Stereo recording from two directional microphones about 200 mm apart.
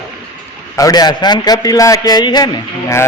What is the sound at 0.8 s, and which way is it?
A man's voice, 20° left (ahead or behind).